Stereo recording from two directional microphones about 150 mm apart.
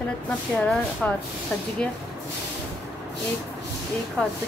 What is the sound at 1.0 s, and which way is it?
Speech, 5° left (ahead or behind).